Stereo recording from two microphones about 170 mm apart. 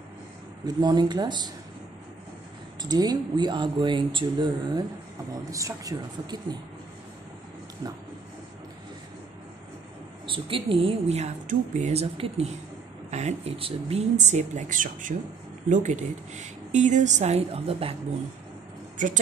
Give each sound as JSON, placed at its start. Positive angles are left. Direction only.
{"t": 0.7, "sound": "speech", "side_deg": -25}
{"t": 2.8, "sound": "speech", "side_deg": -25}
{"t": 7.8, "sound": "speech", "side_deg": -20}
{"t": 10.2, "sound": "a woman's voice", "side_deg": -30}
{"t": 19.0, "sound": "a woman's voice", "side_deg": -50}